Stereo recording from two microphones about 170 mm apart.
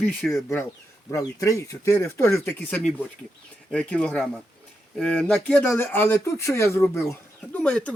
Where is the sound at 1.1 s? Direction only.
20° left (ahead or behind).